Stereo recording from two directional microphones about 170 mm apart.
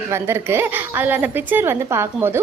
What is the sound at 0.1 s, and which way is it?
A woman's voice, 15° right (ahead or behind).